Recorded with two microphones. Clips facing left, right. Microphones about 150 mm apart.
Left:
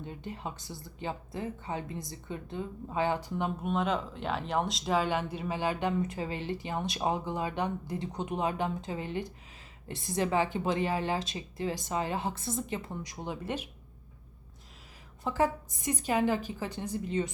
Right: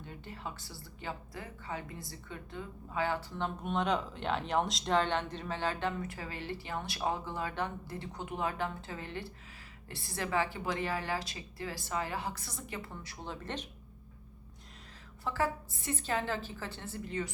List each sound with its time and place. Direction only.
0.0 s a woman's voice: 20° left (ahead or behind)
3.6 s a woman's voice: centre (ahead or behind)
15.2 s speech: 20° left (ahead or behind)